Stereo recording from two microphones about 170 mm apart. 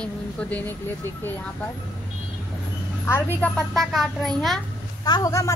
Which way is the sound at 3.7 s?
Centre (ahead or behind).